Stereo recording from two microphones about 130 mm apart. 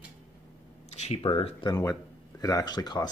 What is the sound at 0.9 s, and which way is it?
Speech, 50° left (ahead or behind).